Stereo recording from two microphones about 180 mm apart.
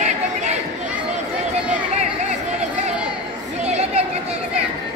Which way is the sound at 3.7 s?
35° right (ahead or behind).